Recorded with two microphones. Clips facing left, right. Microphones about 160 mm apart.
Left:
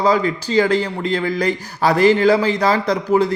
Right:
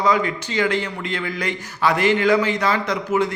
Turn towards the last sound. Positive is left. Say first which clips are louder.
# left 4 dB
turn(degrees=35)  # may be behind; listen again after turning